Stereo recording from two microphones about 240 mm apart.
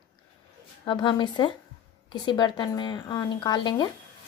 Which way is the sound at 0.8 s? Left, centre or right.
Centre.